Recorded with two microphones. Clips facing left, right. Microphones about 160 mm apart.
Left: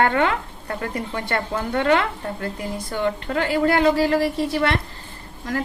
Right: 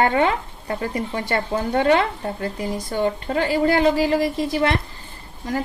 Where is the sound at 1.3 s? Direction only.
30° right (ahead or behind).